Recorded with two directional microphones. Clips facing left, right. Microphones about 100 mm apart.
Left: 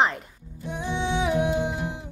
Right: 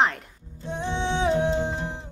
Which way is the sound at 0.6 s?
25° right (ahead or behind).